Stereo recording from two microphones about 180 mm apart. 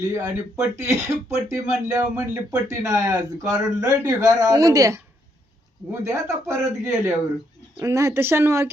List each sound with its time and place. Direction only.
0.1 s speech: 20° right (ahead or behind)